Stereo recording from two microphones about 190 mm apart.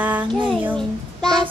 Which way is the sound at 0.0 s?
10° right (ahead or behind).